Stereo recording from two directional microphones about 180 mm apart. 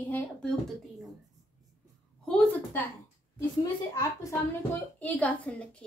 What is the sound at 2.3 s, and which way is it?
Speech, 10° left (ahead or behind).